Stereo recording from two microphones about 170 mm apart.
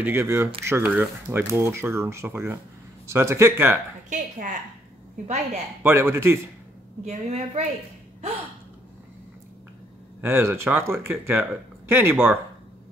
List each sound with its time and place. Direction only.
0.0 s speech: 15° right (ahead or behind)
4.1 s a woman's voice: 45° right (ahead or behind)
5.8 s speech: 15° right (ahead or behind)
7.1 s a woman's voice: 40° right (ahead or behind)
10.2 s speech: 15° right (ahead or behind)